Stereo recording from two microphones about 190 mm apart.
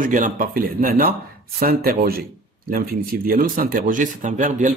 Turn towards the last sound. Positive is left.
turn(degrees=-40)  # may be behind; listen again after turning